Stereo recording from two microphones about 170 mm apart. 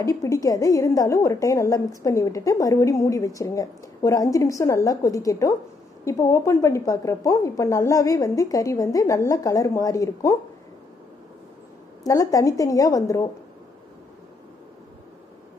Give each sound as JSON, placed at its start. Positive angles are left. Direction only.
{"t": 0.0, "sound": "a woman's voice", "side_deg": 20}
{"t": 12.0, "sound": "a woman's voice", "side_deg": 20}